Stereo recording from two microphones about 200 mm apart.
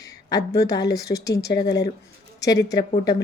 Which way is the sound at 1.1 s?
30° left (ahead or behind).